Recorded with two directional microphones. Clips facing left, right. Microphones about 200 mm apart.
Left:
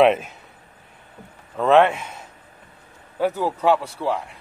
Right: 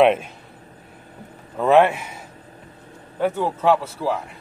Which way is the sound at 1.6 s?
5° right (ahead or behind).